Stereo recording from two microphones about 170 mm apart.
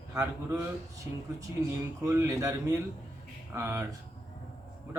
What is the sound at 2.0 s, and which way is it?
A man's voice, 15° right (ahead or behind).